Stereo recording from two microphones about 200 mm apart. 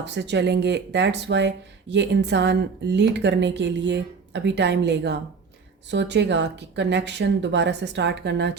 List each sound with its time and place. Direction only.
0.0 s speech: 60° right (ahead or behind)